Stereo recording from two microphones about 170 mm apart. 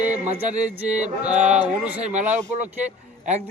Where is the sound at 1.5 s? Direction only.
10° right (ahead or behind).